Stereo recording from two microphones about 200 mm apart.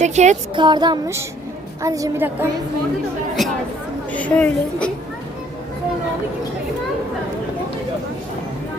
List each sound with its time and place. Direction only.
0.0 s speech: 35° right (ahead or behind)
0.5 s a woman's voice: 20° right (ahead or behind)
3.4 s a woman's voice: centre (ahead or behind)